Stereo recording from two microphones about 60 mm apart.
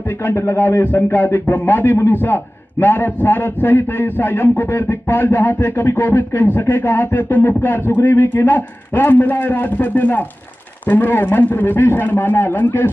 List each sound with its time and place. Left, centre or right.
0.6 s a man's voice: left